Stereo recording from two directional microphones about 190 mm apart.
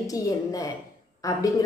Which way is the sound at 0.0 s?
20° left (ahead or behind).